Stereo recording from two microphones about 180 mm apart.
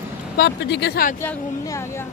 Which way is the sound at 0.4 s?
65° left (ahead or behind).